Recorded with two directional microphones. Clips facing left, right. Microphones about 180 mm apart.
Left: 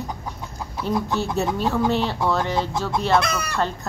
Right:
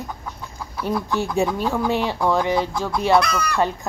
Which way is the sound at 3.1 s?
25° left (ahead or behind).